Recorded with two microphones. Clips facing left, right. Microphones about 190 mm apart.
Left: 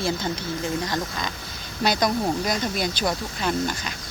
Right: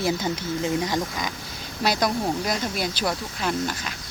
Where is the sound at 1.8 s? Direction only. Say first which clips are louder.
Left 1 dB; 5° right (ahead or behind).